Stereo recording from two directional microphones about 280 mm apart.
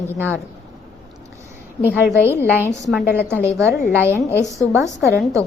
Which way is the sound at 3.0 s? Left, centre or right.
Left.